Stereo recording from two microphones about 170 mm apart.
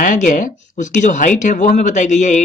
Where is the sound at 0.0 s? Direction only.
50° left (ahead or behind).